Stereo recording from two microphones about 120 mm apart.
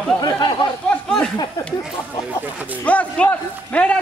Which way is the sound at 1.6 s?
25° left (ahead or behind).